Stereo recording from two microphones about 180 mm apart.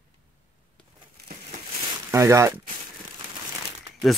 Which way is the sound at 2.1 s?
15° right (ahead or behind).